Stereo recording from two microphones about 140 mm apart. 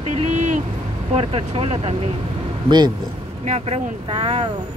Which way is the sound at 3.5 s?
50° right (ahead or behind).